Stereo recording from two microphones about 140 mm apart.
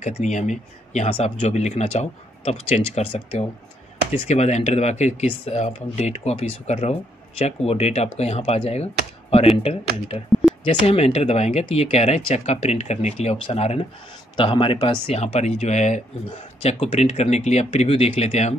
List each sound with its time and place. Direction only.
0.2 s speech: 55° left (ahead or behind)
10.6 s speech: 45° left (ahead or behind)